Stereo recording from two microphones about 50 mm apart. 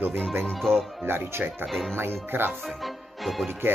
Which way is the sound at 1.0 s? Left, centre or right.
Right.